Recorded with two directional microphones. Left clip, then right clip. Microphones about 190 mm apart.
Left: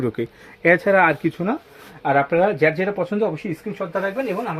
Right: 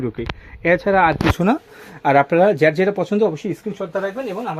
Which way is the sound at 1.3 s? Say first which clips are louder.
Right 6 dB; 65° right (ahead or behind).